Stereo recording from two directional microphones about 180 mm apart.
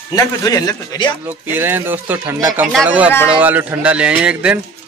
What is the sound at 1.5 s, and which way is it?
A man's voice, 10° right (ahead or behind).